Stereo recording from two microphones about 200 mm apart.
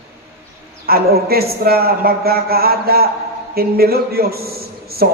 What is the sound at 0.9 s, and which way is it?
A woman's voice, 50° right (ahead or behind).